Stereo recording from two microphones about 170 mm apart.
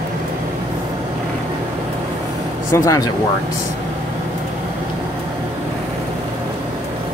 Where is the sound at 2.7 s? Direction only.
20° left (ahead or behind).